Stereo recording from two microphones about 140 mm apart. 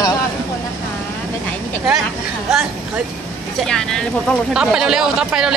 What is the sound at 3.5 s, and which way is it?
Speech, 5° left (ahead or behind).